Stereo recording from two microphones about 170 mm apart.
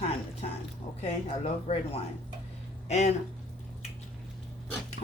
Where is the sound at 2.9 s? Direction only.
40° left (ahead or behind).